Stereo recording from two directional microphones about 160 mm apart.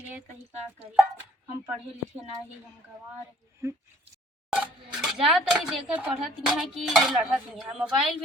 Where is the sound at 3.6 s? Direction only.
20° right (ahead or behind).